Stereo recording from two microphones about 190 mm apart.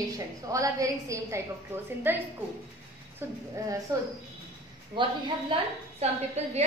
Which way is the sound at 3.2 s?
10° right (ahead or behind).